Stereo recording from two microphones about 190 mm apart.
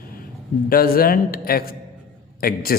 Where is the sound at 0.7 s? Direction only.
50° left (ahead or behind).